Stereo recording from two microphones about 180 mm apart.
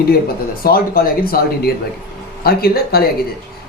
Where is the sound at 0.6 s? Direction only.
55° left (ahead or behind).